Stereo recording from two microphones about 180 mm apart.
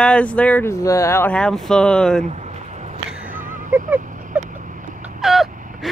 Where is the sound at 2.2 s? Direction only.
40° right (ahead or behind).